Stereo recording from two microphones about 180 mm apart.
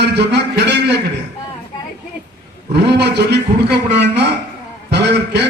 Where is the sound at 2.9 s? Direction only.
70° right (ahead or behind).